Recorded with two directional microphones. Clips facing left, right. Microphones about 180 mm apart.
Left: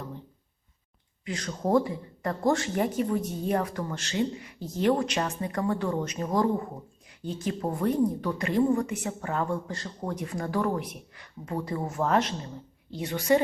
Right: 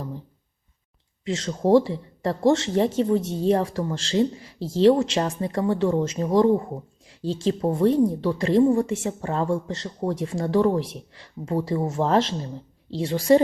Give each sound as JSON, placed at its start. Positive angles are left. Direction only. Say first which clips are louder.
{"t": 1.2, "sound": "a woman's voice", "louder": "right 7 dB", "side_deg": -25}